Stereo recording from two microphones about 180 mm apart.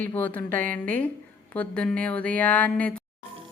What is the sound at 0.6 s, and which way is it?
Speech, 50° right (ahead or behind).